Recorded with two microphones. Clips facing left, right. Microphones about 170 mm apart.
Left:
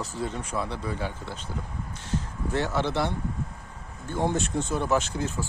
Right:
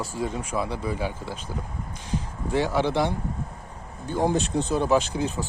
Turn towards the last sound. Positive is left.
turn(degrees=-15)  # may be behind; listen again after turning